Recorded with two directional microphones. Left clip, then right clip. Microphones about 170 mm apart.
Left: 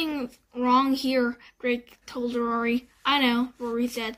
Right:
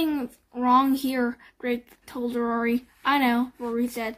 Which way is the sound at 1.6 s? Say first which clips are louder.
Left 2 dB; 50° right (ahead or behind).